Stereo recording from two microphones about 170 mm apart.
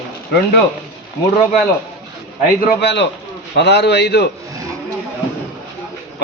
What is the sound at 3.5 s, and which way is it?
Speech, 80° left.